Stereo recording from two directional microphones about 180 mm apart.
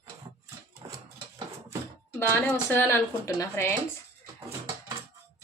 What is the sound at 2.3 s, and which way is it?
Speech, 10° left (ahead or behind).